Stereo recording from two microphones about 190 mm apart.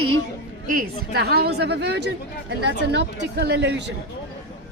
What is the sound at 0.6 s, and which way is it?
Speech, 50° right (ahead or behind).